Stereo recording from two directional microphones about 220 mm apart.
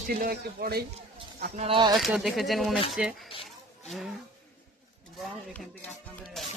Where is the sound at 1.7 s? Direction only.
20° right (ahead or behind).